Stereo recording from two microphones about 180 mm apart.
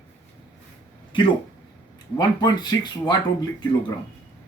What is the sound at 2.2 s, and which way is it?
Speech, 20° left (ahead or behind).